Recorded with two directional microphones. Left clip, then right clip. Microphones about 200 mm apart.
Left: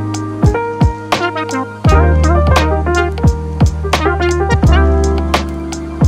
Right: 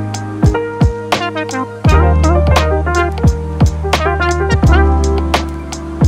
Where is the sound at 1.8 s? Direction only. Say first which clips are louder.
Even; centre (ahead or behind).